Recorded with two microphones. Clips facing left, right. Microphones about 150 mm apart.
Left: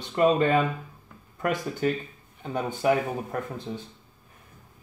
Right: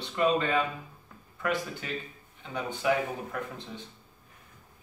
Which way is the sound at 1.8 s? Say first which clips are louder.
Left 11 dB; 45° left (ahead or behind).